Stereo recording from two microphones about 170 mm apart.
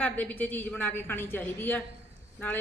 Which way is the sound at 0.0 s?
10° left (ahead or behind).